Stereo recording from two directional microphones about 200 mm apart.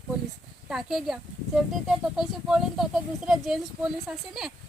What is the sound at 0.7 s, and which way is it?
Speech, centre (ahead or behind).